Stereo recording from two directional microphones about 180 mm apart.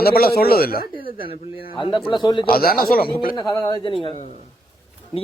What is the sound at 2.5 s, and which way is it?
Speech, 55° left (ahead or behind).